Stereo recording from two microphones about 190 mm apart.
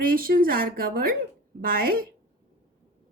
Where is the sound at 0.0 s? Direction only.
50° right (ahead or behind).